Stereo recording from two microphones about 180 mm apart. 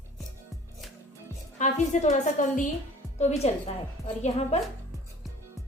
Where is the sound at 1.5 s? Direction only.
40° left (ahead or behind).